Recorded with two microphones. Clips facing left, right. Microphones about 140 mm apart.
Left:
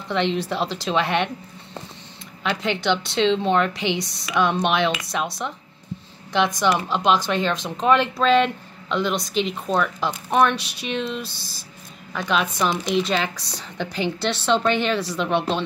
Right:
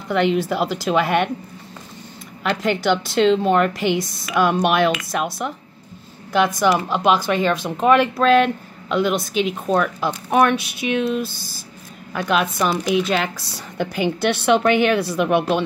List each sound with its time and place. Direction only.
0.1 s a woman's voice: 5° right (ahead or behind)
2.5 s a woman's voice: 45° right (ahead or behind)
3.2 s speech: 5° right (ahead or behind)
3.7 s a woman's voice: 50° right (ahead or behind)
4.3 s a woman's voice: 5° right (ahead or behind)